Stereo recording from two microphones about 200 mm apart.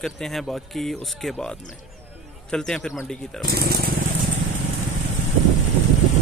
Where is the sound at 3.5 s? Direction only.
50° right (ahead or behind).